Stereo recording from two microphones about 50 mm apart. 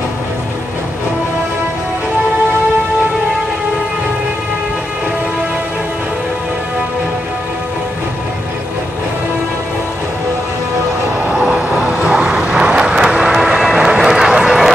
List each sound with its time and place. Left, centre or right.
11.2 s vehicle: right